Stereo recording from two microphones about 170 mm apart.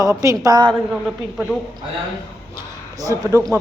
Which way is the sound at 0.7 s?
Centre (ahead or behind).